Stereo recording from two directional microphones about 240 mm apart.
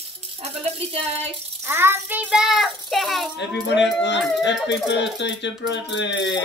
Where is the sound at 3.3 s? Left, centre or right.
Left.